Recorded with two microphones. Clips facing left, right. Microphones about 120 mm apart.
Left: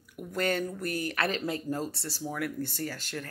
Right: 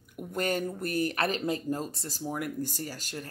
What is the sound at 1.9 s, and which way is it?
Speech, 45° right (ahead or behind).